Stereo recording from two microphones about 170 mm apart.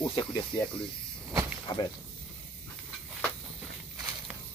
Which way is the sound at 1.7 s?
20° left (ahead or behind).